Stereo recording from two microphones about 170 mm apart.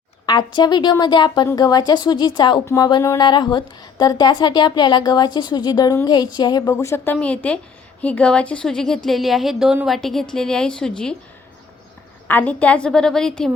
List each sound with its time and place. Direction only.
0.3 s a woman's voice: 25° left (ahead or behind); by 11.1 s 5° left (ahead or behind)
12.3 s a woman's voice: 10° left (ahead or behind)